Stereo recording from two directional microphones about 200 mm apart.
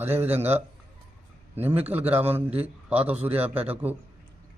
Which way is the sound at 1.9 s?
10° right (ahead or behind).